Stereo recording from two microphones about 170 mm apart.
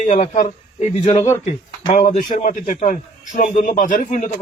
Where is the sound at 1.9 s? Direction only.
50° left (ahead or behind).